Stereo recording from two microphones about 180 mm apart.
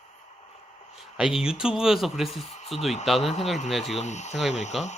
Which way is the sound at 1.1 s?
5° right (ahead or behind).